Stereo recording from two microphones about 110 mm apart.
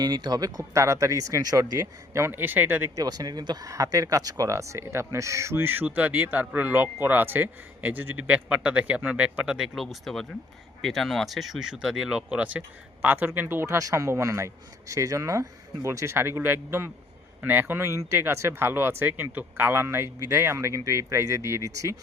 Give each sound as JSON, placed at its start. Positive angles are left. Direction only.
{"t": 0.0, "sound": "speech", "side_deg": -40}
{"t": 2.9, "sound": "speech", "side_deg": -35}